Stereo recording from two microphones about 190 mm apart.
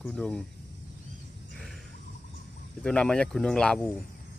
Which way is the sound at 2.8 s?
5° left (ahead or behind).